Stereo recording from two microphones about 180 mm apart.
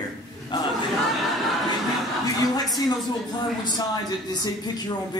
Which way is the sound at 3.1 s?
25° left (ahead or behind).